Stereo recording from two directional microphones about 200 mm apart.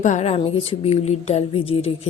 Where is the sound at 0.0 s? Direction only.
35° left (ahead or behind).